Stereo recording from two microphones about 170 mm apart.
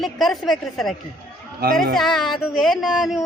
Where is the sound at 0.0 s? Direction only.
Centre (ahead or behind).